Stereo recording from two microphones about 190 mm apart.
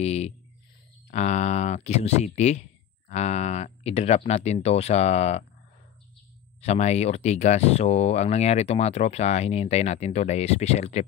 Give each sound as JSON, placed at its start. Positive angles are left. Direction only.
{"t": 0.0, "sound": "speech", "side_deg": 35}
{"t": 6.6, "sound": "speech", "side_deg": 35}